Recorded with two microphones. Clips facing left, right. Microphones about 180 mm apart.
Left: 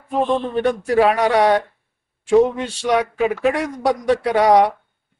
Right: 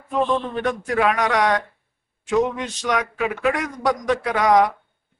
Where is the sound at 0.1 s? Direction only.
30° left (ahead or behind).